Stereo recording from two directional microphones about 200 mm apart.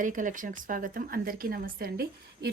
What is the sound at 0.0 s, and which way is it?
A woman's voice, 40° right (ahead or behind).